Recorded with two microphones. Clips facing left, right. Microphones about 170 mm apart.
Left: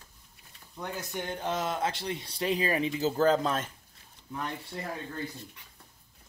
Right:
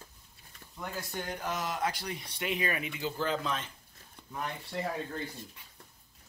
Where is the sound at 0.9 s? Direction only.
20° left (ahead or behind); by 3.7 s 45° left (ahead or behind).